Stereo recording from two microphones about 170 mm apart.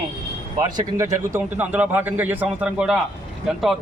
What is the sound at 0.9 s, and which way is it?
A man's voice, 15° right (ahead or behind).